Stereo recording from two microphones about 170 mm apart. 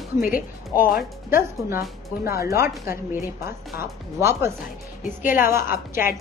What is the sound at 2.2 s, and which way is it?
Speech, 15° right (ahead or behind).